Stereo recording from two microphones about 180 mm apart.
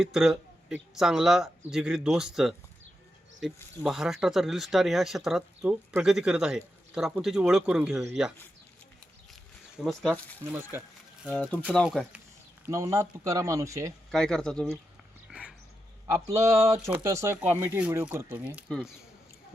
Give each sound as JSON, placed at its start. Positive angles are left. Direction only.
{"t": 0.0, "sound": "speech", "side_deg": -5}
{"t": 9.8, "sound": "speech", "side_deg": 5}
{"t": 10.5, "sound": "speech", "side_deg": -10}
{"t": 11.3, "sound": "speech", "side_deg": 10}
{"t": 12.6, "sound": "speech", "side_deg": -15}
{"t": 14.1, "sound": "speech", "side_deg": 5}
{"t": 15.3, "sound": "dog", "side_deg": -5}
{"t": 16.0, "sound": "speech", "side_deg": -15}